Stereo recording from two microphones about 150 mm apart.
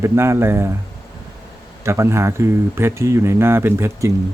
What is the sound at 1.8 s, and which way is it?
Speech, 20° right (ahead or behind).